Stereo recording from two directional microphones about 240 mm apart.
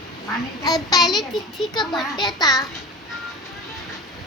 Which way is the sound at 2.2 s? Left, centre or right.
Centre.